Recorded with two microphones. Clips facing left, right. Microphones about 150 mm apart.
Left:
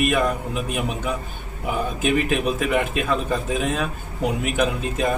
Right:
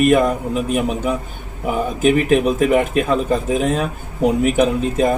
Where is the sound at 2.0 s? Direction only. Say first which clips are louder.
Right 7 dB; 40° right (ahead or behind).